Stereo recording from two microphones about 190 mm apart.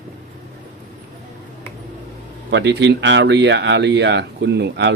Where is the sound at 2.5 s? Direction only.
65° right (ahead or behind).